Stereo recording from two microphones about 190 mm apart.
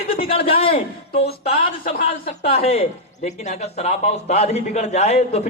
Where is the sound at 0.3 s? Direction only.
30° left (ahead or behind).